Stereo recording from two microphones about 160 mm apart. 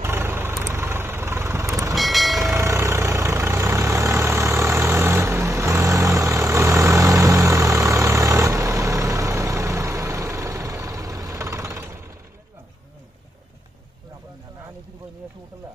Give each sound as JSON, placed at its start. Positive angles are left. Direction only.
{"t": 0.0, "sound": "vehicle", "side_deg": -15}
{"t": 2.0, "sound": "train", "side_deg": 0}
{"t": 2.4, "sound": "vehicle", "side_deg": -20}